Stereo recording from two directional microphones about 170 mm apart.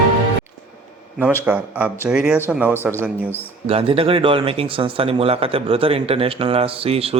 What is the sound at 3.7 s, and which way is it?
Speech, 35° right (ahead or behind).